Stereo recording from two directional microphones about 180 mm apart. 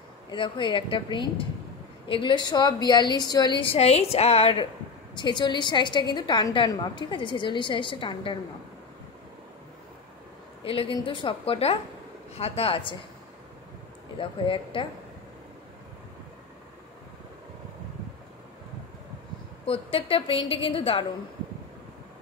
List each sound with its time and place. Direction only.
0.3 s a woman's voice: 25° left (ahead or behind)
10.6 s a woman's voice: 30° left (ahead or behind)
14.1 s a woman's voice: 30° left (ahead or behind)
19.6 s a woman's voice: 30° left (ahead or behind)